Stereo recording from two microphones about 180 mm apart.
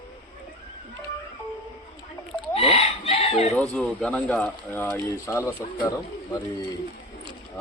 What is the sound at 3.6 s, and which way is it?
A man's voice, 5° left (ahead or behind).